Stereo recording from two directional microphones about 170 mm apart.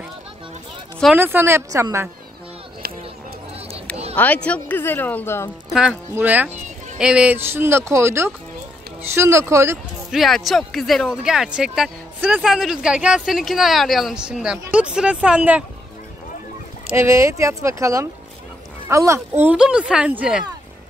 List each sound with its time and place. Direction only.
1.1 s speech: 10° right (ahead or behind)
4.1 s speech: 10° left (ahead or behind)
5.7 s speech: 5° right (ahead or behind)
10.1 s speech: centre (ahead or behind)
16.9 s speech: 15° right (ahead or behind)